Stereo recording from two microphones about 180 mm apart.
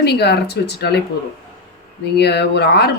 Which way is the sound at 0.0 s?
65° left (ahead or behind).